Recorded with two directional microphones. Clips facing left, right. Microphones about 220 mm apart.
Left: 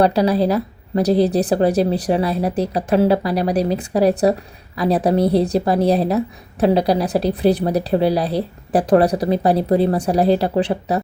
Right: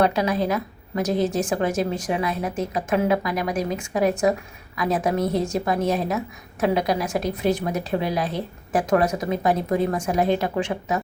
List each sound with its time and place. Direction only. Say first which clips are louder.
0.0 s a woman's voice: left 5 dB; 35° left (ahead or behind)